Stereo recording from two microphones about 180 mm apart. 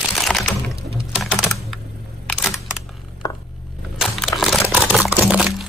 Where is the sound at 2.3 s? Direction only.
5° right (ahead or behind).